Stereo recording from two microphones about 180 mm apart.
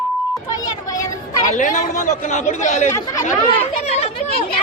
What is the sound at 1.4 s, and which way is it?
A child's voice, 45° left (ahead or behind).